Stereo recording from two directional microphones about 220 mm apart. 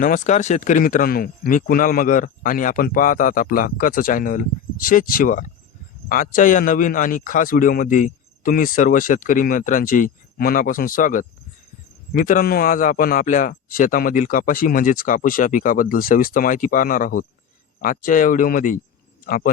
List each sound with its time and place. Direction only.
0.0 s a man's voice: 35° left (ahead or behind)